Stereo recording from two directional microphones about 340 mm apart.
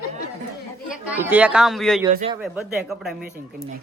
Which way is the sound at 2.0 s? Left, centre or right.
Centre.